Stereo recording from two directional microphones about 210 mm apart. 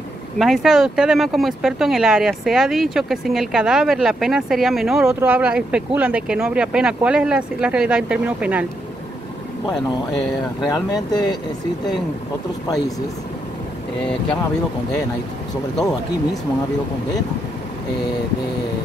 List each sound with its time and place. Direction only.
0.4 s speech: centre (ahead or behind)
9.7 s speech: 20° left (ahead or behind)